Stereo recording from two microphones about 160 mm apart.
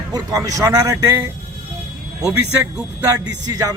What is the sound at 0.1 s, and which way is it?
Speech, 20° right (ahead or behind).